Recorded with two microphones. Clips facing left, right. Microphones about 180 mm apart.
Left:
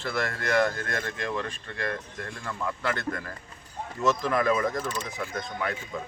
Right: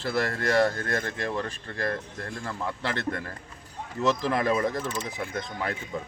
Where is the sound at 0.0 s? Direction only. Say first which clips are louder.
Right 3 dB; 35° right (ahead or behind).